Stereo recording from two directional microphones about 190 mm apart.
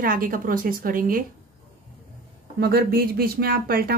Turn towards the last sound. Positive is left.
turn(degrees=-50)  # may be behind; listen again after turning